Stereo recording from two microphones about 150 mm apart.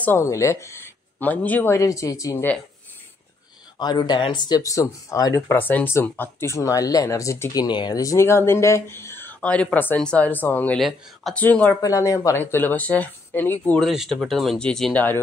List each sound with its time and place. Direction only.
0.0 s speech: 15° left (ahead or behind)
3.7 s speech: 30° left (ahead or behind); by 10.8 s 10° left (ahead or behind)
10.8 s speech: centre (ahead or behind)
11.3 s speech: 10° left (ahead or behind)
11.8 s speech: 20° left (ahead or behind)
13.8 s speech: centre (ahead or behind)